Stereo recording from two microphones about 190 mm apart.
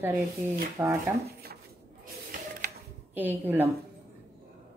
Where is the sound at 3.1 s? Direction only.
10° right (ahead or behind).